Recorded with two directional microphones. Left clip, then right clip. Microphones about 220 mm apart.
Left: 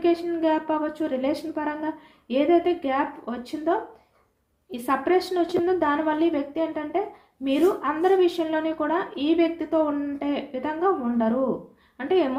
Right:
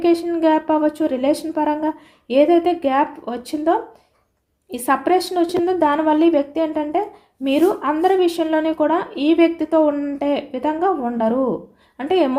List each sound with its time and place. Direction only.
0.0 s speech: 50° right (ahead or behind)